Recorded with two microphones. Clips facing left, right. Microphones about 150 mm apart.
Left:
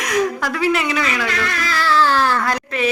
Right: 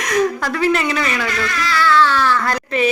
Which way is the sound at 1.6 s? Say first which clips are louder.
Right 3 dB; 40° left (ahead or behind).